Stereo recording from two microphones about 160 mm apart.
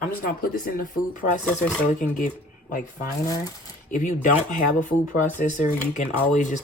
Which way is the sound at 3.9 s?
50° left (ahead or behind).